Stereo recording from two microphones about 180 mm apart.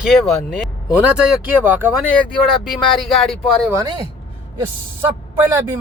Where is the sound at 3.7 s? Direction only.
20° right (ahead or behind).